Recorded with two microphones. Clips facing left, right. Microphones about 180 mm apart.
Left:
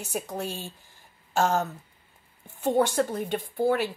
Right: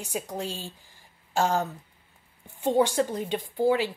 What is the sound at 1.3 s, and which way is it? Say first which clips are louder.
Speech: left 1 dB; 15° right (ahead or behind).